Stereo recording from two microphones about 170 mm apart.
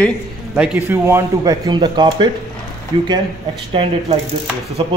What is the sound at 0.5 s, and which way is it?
A man's voice, 5° right (ahead or behind).